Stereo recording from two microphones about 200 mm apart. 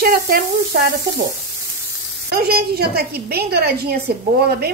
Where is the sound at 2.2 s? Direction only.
50° right (ahead or behind).